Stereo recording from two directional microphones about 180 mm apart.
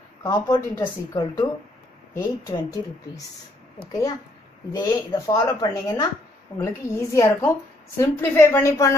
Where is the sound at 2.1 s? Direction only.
20° left (ahead or behind).